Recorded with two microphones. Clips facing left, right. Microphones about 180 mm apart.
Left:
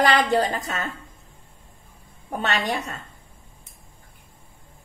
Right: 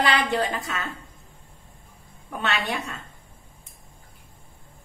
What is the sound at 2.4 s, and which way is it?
Speech, 40° left (ahead or behind).